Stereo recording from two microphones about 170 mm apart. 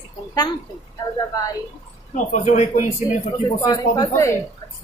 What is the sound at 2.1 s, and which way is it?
Speech, 45° left (ahead or behind).